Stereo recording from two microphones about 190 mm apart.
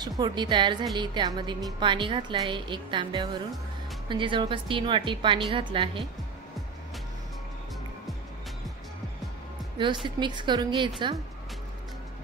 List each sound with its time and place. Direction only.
0.2 s a woman's voice: 25° right (ahead or behind)
9.8 s a woman's voice: 25° right (ahead or behind)